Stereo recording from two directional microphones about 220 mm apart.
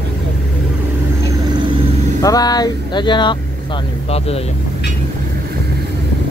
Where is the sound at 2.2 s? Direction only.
15° left (ahead or behind).